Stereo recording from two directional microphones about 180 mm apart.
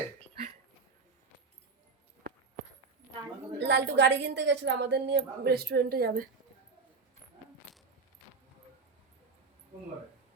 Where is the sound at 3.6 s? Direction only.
75° right (ahead or behind); by 6.2 s 60° right (ahead or behind).